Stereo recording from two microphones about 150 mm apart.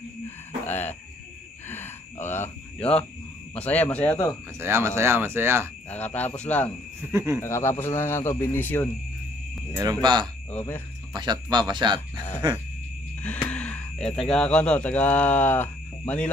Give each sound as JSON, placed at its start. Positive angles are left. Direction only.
{"t": 0.7, "sound": "owl", "side_deg": 15}
{"t": 1.7, "sound": "a sound", "side_deg": 15}
{"t": 3.5, "sound": "speech", "side_deg": 10}
{"t": 4.6, "sound": "speech", "side_deg": -15}
{"t": 5.9, "sound": "speech", "side_deg": 10}
{"t": 7.0, "sound": "speech", "side_deg": -15}
{"t": 7.4, "sound": "speech", "side_deg": 15}
{"t": 10.5, "sound": "speech", "side_deg": 15}
{"t": 11.1, "sound": "speech", "side_deg": -25}
{"t": 13.2, "sound": "a sound", "side_deg": 10}
{"t": 14.3, "sound": "speech", "side_deg": 5}